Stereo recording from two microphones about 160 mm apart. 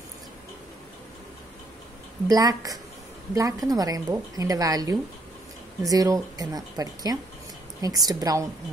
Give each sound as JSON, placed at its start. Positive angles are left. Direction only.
{"t": 2.2, "sound": "a woman's voice", "side_deg": -20}